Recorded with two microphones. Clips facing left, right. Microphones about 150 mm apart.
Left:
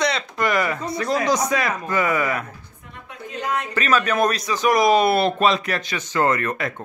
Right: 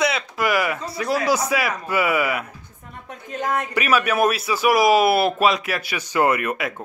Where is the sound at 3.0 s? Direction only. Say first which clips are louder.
Right 2 dB; 50° right (ahead or behind).